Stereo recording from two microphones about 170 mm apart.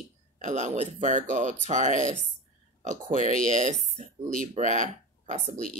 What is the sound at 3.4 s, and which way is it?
Speech, 50° right (ahead or behind).